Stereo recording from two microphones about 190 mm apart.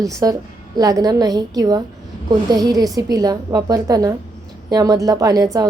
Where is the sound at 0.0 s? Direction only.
15° right (ahead or behind).